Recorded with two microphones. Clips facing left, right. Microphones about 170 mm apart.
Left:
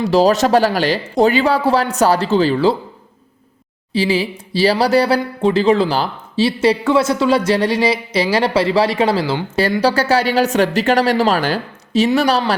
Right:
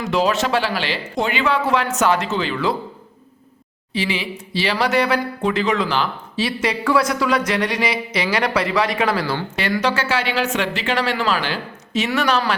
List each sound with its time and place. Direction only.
0.0 s speech: 35° left (ahead or behind)
3.9 s speech: 35° left (ahead or behind)
9.8 s speech: 40° left (ahead or behind)